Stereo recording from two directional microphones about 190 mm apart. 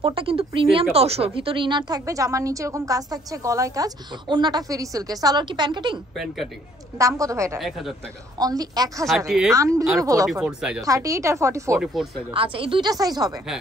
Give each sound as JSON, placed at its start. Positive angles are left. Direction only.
{"t": 0.0, "sound": "speech", "side_deg": -30}
{"t": 6.1, "sound": "speech", "side_deg": 0}
{"t": 7.0, "sound": "speech", "side_deg": -15}
{"t": 7.5, "sound": "speech", "side_deg": 0}
{"t": 8.4, "sound": "speech", "side_deg": -20}
{"t": 10.4, "sound": "speech", "side_deg": -5}
{"t": 10.8, "sound": "speech", "side_deg": -15}
{"t": 11.8, "sound": "speech", "side_deg": 0}
{"t": 12.4, "sound": "speech", "side_deg": -30}